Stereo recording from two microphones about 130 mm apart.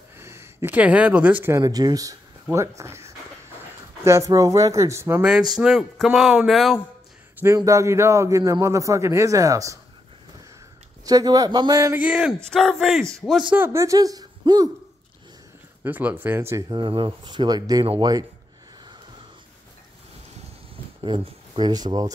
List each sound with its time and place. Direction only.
0.2 s speech: 20° right (ahead or behind)
1.6 s a man's voice: 30° right (ahead or behind)
5.2 s speech: 5° right (ahead or behind)
7.3 s a man's voice: 20° right (ahead or behind)
11.1 s a man's voice: 30° right (ahead or behind)
12.0 s speech: 5° right (ahead or behind)
12.4 s speech: 5° left (ahead or behind)
13.6 s a woman's voice: 25° right (ahead or behind)
15.8 s a man's voice: 15° right (ahead or behind); by 17.8 s 30° right (ahead or behind)
21.0 s speech: 40° right (ahead or behind)